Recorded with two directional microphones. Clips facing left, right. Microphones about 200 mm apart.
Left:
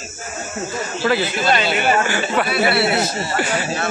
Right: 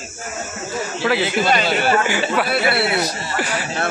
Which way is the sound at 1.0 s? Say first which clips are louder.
Even; centre (ahead or behind).